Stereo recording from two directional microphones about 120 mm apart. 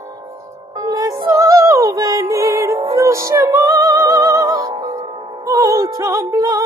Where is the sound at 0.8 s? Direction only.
30° right (ahead or behind).